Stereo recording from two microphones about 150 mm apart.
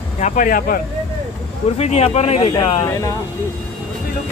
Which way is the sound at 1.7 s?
45° left (ahead or behind).